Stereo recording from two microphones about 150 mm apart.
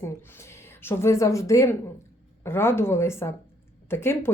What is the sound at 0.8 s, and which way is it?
Speech, 15° left (ahead or behind).